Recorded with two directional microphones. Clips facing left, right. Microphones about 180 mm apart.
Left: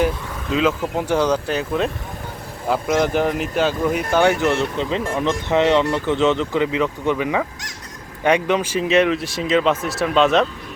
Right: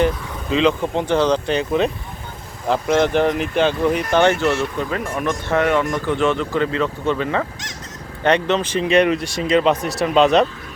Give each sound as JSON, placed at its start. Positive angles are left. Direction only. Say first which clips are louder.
{"t": 0.5, "sound": "speech", "louder": "right 2 dB", "side_deg": 5}